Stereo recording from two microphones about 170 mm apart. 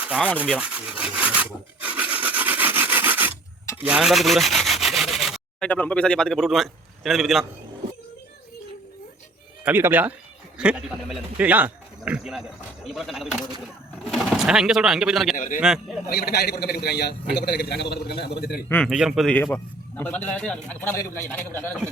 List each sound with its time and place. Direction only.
0.0 s rub: 10° right (ahead or behind)
9.6 s a man's voice: 10° right (ahead or behind)
15.4 s a man's voice: 50° left (ahead or behind)
16.0 s a man's voice: 70° left (ahead or behind)
18.9 s a man's voice: centre (ahead or behind)